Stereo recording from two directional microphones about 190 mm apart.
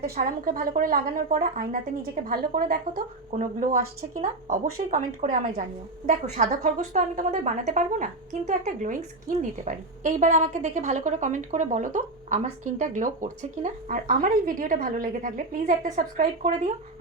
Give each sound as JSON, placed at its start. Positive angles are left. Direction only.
{"t": 0.2, "sound": "a woman's voice", "side_deg": -50}